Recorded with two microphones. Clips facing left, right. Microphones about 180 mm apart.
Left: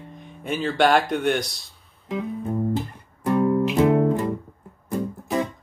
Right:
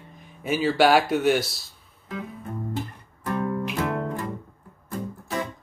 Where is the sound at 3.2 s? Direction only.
25° left (ahead or behind).